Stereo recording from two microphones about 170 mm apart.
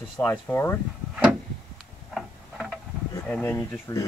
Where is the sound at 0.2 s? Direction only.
10° left (ahead or behind).